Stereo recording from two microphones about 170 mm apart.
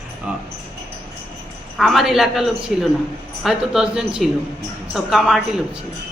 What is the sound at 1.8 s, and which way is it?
Speech, centre (ahead or behind).